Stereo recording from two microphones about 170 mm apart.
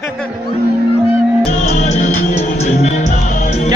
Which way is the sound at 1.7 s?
40° left (ahead or behind).